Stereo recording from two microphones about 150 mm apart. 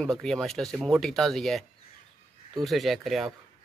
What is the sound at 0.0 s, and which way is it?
Speech, 5° left (ahead or behind).